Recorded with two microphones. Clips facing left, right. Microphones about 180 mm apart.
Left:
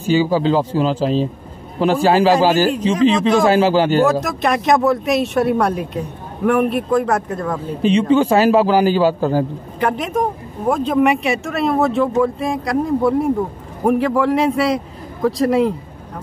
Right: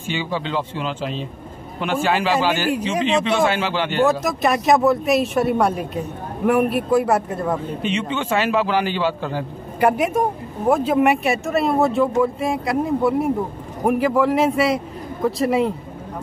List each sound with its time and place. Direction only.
0.0 s a man's voice: 40° left (ahead or behind)
4.0 s speech: centre (ahead or behind)
7.8 s a man's voice: 35° left (ahead or behind)
9.8 s a woman's voice: 10° right (ahead or behind)